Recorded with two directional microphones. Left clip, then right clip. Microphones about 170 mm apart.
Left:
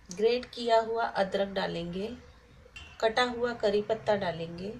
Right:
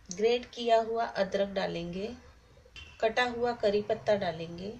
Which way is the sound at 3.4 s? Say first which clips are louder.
Even; centre (ahead or behind).